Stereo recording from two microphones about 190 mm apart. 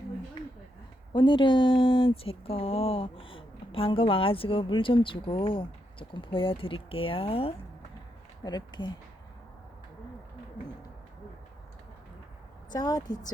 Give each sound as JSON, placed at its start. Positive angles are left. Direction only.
{"t": 1.1, "sound": "a woman's voice", "side_deg": 25}
{"t": 12.7, "sound": "a woman's voice", "side_deg": 20}